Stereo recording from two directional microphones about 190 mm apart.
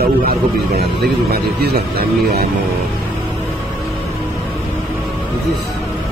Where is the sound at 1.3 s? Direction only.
55° right (ahead or behind).